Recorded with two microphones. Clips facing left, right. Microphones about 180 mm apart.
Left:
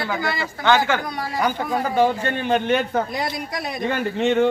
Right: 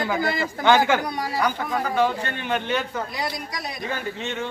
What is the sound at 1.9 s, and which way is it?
Speech, 35° left (ahead or behind).